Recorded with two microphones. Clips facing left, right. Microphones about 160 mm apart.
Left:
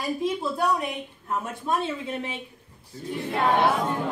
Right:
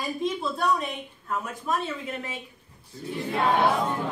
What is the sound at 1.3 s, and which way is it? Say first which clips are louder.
Speech: left 1 dB; 30° left (ahead or behind).